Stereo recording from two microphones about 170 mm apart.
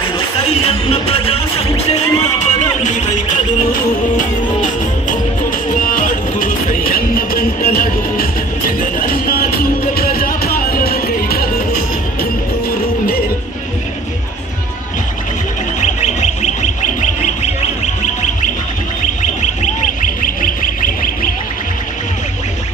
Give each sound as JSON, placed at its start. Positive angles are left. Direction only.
{"t": 0.5, "sound": "speech", "side_deg": 35}
{"t": 5.0, "sound": "music", "side_deg": 55}
{"t": 15.8, "sound": "a sound", "side_deg": 45}
{"t": 19.2, "sound": "sine wave", "side_deg": 45}
{"t": 20.2, "sound": "goose", "side_deg": 55}